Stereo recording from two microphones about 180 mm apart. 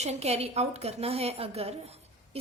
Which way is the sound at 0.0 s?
35° right (ahead or behind).